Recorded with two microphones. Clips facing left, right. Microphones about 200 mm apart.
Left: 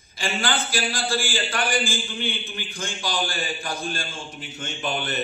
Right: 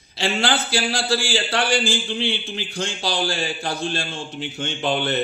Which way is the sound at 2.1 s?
75° right (ahead or behind).